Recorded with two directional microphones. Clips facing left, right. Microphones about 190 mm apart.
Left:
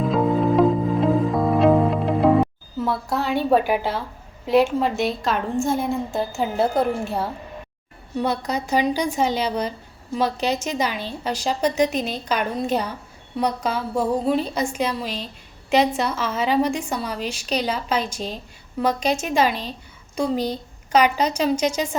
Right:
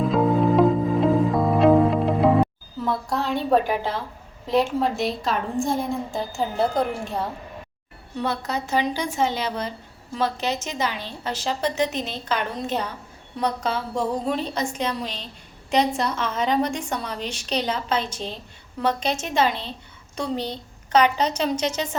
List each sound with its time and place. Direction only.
0.1 s music: centre (ahead or behind)
2.7 s a woman's voice: 5° left (ahead or behind)
8.2 s a woman's voice: 15° left (ahead or behind)